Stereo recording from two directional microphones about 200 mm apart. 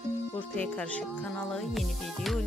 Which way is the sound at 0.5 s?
5° left (ahead or behind).